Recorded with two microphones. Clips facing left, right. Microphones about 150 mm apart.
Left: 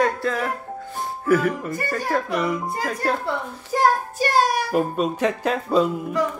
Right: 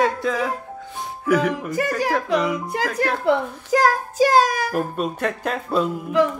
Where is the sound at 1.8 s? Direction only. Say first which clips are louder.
Right 4 dB; 90° right.